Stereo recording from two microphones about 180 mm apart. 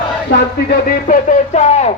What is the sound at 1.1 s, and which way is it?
Speech, 45° left (ahead or behind).